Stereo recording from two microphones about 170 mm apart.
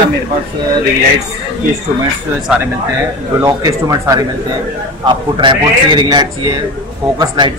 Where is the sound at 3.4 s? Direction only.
20° right (ahead or behind).